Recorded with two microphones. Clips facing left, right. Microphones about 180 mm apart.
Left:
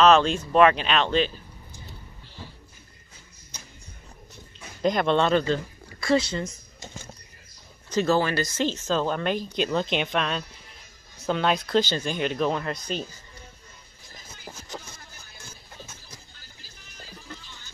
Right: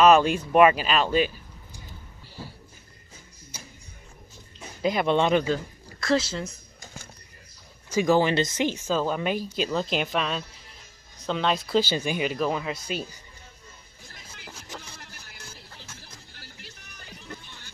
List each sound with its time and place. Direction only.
0.0 s speech: 10° right (ahead or behind)
4.8 s speech: 10° right (ahead or behind)
5.9 s speech: centre (ahead or behind)
7.9 s speech: 15° right (ahead or behind)
15.0 s a sound: 75° right (ahead or behind)